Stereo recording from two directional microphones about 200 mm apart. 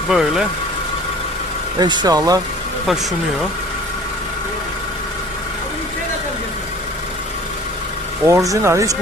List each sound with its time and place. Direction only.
0.1 s speech: centre (ahead or behind)
1.8 s speech: 20° right (ahead or behind)
2.8 s speech: centre (ahead or behind)
8.2 s speech: 15° right (ahead or behind)